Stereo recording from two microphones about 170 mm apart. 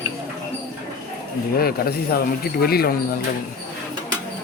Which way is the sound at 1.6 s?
65° left (ahead or behind).